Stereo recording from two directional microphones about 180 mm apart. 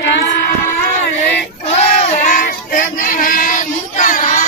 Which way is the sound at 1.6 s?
40° left (ahead or behind).